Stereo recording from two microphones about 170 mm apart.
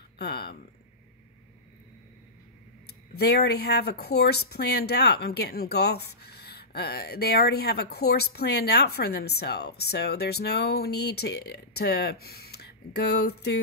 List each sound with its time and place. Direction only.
0.2 s speech: 70° left (ahead or behind)
3.2 s speech: 70° left (ahead or behind)